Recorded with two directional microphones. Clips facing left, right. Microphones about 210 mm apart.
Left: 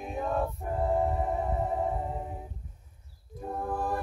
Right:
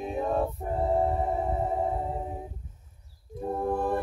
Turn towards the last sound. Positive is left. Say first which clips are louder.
# right 5 dB
turn(degrees=-25)  # may be behind; listen again after turning